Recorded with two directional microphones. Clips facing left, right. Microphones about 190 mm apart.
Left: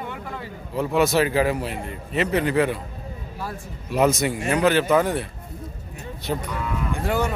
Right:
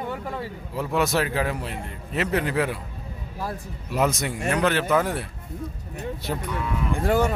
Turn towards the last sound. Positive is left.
turn(degrees=-45)  # may be behind; listen again after turning